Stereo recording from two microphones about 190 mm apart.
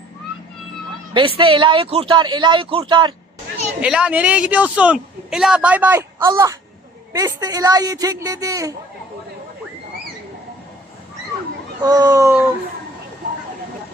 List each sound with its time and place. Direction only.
1.1 s speech: 25° right (ahead or behind)
3.8 s speech: 5° right (ahead or behind)
11.8 s speech: 20° right (ahead or behind)